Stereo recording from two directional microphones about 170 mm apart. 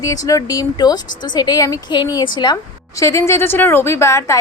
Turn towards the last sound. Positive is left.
turn(degrees=15)  # may be behind; listen again after turning